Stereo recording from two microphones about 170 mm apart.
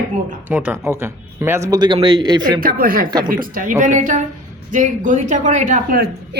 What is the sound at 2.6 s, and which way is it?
A man's voice, 55° right (ahead or behind).